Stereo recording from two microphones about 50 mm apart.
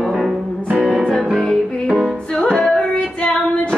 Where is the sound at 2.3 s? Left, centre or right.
Centre.